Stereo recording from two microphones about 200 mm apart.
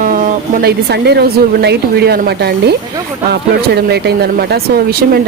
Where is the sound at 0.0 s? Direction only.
45° right (ahead or behind).